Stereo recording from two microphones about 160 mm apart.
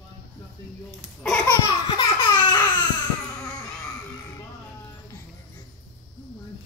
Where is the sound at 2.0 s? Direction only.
30° left (ahead or behind).